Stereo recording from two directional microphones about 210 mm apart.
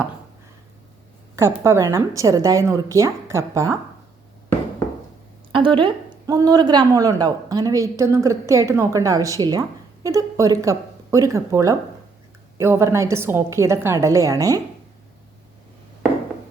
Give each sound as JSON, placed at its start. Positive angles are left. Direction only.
{"t": 1.4, "sound": "a woman's voice", "side_deg": -10}
{"t": 5.5, "sound": "a woman's voice", "side_deg": -25}